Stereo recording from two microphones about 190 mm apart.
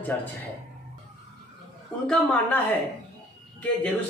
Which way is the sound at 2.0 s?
5° left (ahead or behind).